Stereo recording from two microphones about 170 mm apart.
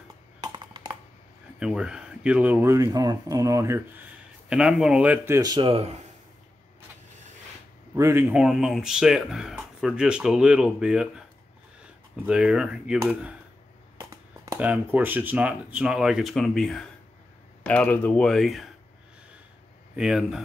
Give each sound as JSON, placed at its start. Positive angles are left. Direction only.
{"t": 0.4, "sound": "music", "side_deg": -25}
{"t": 1.6, "sound": "speech", "side_deg": -5}
{"t": 4.5, "sound": "speech", "side_deg": -5}
{"t": 7.9, "sound": "speech", "side_deg": -15}
{"t": 12.3, "sound": "speech", "side_deg": -5}
{"t": 13.9, "sound": "a sound", "side_deg": -20}
{"t": 14.6, "sound": "speech", "side_deg": -10}
{"t": 20.0, "sound": "speech", "side_deg": -5}